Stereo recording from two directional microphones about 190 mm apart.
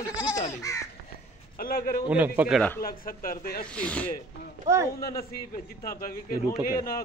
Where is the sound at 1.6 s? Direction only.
50° left (ahead or behind).